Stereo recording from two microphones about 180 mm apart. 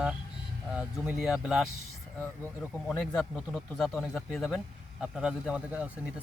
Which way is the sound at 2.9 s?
5° left (ahead or behind).